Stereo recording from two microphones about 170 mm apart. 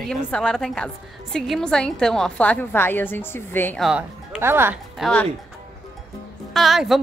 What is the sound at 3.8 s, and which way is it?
A woman's voice, 5° right (ahead or behind).